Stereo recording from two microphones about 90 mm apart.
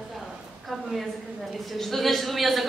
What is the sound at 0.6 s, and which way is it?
A woman's voice, centre (ahead or behind).